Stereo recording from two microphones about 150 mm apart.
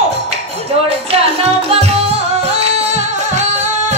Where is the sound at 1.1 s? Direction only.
40° right (ahead or behind).